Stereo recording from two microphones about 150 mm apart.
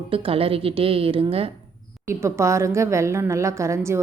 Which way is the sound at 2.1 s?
20° right (ahead or behind).